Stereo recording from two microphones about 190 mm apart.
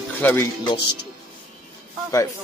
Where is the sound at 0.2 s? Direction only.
10° left (ahead or behind).